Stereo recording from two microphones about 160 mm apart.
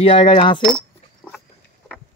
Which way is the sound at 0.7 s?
5° left (ahead or behind).